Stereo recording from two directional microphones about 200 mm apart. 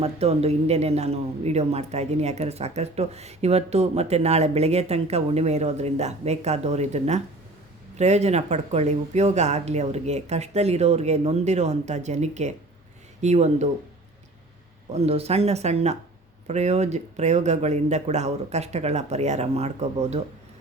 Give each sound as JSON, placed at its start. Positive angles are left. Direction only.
{"t": 0.0, "sound": "speech", "side_deg": -30}
{"t": 15.0, "sound": "speech", "side_deg": -30}